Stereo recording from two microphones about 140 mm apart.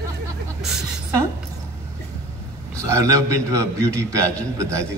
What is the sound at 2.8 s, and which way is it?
A woman's voice, 20° right (ahead or behind).